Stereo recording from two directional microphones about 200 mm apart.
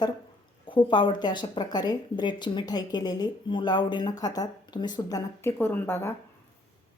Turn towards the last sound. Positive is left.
turn(degrees=10)  # may be behind; listen again after turning